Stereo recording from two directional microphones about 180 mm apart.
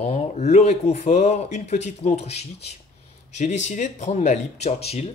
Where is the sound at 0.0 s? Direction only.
35° left (ahead or behind).